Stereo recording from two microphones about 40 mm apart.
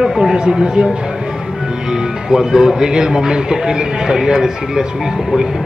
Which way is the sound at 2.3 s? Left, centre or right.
Centre.